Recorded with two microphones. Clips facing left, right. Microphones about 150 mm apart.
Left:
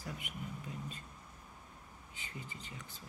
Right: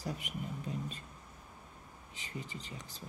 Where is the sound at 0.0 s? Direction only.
35° right (ahead or behind).